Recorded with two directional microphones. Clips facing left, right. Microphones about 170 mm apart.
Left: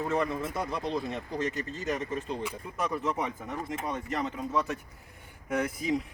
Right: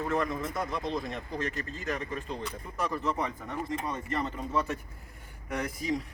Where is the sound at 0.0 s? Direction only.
20° left (ahead or behind).